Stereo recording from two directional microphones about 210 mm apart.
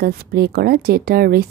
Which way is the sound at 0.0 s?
45° right (ahead or behind).